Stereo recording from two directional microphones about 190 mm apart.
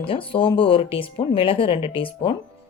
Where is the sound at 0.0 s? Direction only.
30° left (ahead or behind).